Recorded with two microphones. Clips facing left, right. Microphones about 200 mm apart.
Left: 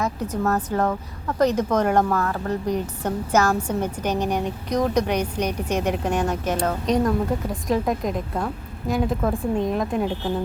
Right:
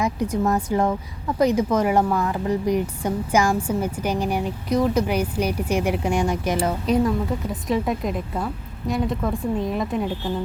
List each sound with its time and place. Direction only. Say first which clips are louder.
0.0 s a woman's voice: right 2 dB; 10° right (ahead or behind)